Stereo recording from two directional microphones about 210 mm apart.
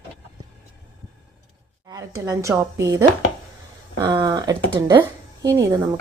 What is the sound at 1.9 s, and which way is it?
Speech, 15° right (ahead or behind).